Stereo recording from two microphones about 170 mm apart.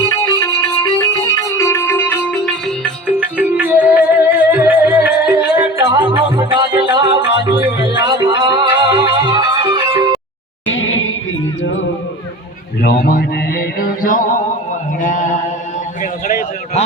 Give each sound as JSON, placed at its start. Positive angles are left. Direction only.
{"t": 0.0, "sound": "music", "side_deg": 20}
{"t": 3.2, "sound": "music", "side_deg": -10}
{"t": 5.8, "sound": "music", "side_deg": -25}
{"t": 12.8, "sound": "mantra", "side_deg": 60}
{"t": 15.0, "sound": "chant", "side_deg": 45}
{"t": 16.0, "sound": "a sound", "side_deg": 45}